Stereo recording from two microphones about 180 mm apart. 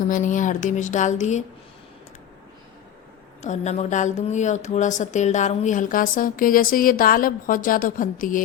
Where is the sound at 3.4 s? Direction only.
40° left (ahead or behind).